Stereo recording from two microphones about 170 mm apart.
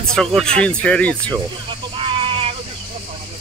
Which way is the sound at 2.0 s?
30° right (ahead or behind).